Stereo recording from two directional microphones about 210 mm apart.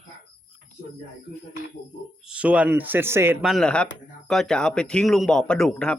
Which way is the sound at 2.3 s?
5° right (ahead or behind).